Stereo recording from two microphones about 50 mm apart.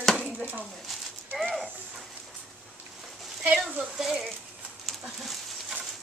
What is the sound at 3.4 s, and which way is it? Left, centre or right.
Speech, right.